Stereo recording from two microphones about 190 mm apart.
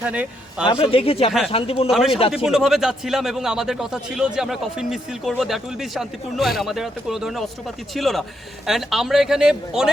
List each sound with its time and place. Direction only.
0.0 s a man's voice: 5° right (ahead or behind)
0.6 s a man's voice: 25° left (ahead or behind)
1.9 s a man's voice: centre (ahead or behind)